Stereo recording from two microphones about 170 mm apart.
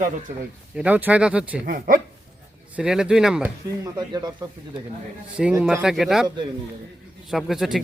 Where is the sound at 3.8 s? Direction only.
25° right (ahead or behind).